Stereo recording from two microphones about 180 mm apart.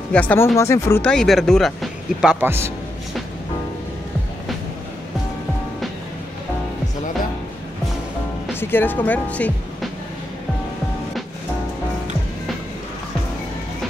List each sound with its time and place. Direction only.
0.1 s speech: 10° left (ahead or behind)
2.4 s a man's voice: 15° right (ahead or behind)
8.5 s speech: 10° left (ahead or behind)